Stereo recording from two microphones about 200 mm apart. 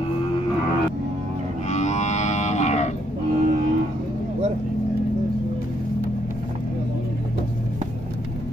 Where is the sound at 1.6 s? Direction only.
35° left (ahead or behind).